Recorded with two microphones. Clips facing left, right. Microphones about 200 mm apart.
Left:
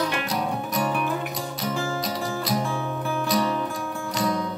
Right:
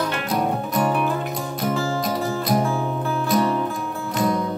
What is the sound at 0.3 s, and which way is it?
Music, 50° right (ahead or behind).